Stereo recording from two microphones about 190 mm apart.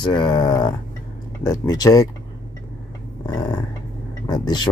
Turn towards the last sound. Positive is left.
turn(degrees=20)  # may be behind; listen again after turning